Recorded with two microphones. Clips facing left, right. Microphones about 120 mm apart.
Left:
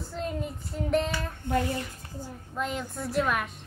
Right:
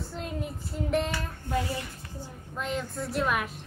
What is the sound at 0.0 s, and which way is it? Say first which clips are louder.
Child singing: left 2 dB; centre (ahead or behind).